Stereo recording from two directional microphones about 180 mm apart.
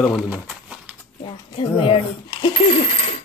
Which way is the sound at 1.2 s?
30° left (ahead or behind).